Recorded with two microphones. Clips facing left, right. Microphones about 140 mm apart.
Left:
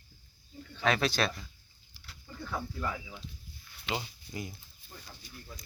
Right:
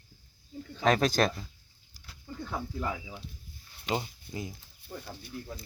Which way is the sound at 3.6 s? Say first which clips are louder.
Right 4 dB; 40° right (ahead or behind).